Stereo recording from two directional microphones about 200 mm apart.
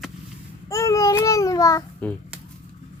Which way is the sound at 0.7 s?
15° left (ahead or behind).